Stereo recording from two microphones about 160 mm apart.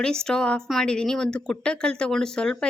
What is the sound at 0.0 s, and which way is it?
A woman's voice, 5° left (ahead or behind).